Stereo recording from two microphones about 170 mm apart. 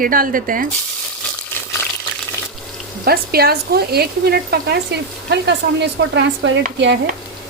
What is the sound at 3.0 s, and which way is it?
Speech, 65° right (ahead or behind).